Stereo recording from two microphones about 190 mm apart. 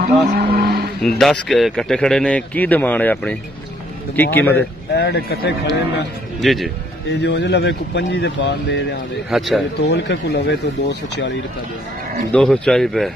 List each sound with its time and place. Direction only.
0.0 s vehicle: 55° right (ahead or behind)
1.0 s a man's voice: centre (ahead or behind)
4.9 s speech: 60° left (ahead or behind)
6.4 s a man's voice: centre (ahead or behind)
7.1 s speech: 65° left (ahead or behind)
9.3 s a man's voice: centre (ahead or behind)
9.8 s speech: 60° left (ahead or behind)
12.3 s a man's voice: 5° left (ahead or behind)